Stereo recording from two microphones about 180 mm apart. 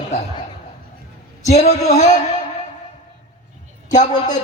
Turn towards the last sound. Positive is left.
turn(degrees=45)  # may be behind; listen again after turning